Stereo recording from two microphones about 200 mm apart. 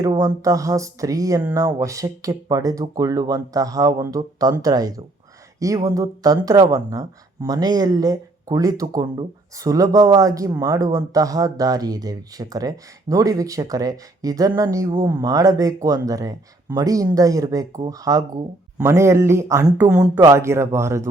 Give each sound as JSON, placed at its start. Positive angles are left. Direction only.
{"t": 0.0, "sound": "speech", "side_deg": -20}
{"t": 20.1, "sound": "speech", "side_deg": -15}